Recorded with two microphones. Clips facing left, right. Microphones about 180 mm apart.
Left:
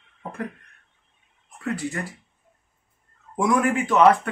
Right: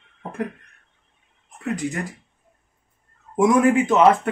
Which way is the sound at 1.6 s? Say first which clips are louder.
Right 2 dB; 20° right (ahead or behind).